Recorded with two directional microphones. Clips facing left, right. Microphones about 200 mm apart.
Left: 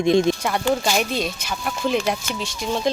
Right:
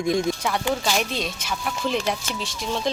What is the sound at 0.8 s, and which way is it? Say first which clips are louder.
Speech: left 3 dB; 5° left (ahead or behind).